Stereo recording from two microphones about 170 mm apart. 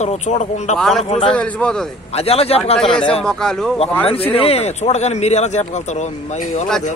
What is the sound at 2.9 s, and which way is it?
Speech, 5° left (ahead or behind).